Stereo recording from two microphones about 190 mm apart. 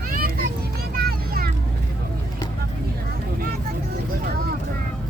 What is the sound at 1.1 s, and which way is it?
Vehicle, 50° right (ahead or behind).